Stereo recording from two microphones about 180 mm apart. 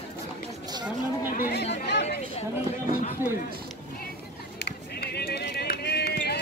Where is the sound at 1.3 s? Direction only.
50° left (ahead or behind).